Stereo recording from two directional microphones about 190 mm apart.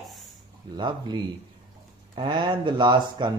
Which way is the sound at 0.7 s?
25° right (ahead or behind).